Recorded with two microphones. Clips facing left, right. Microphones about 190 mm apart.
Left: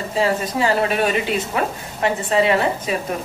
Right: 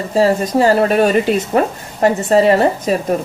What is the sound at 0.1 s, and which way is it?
Speech, 40° right (ahead or behind).